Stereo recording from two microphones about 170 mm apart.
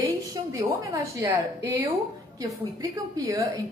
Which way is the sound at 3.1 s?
20° right (ahead or behind).